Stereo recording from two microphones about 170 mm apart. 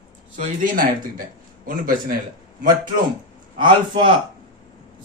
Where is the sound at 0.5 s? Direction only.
55° right (ahead or behind).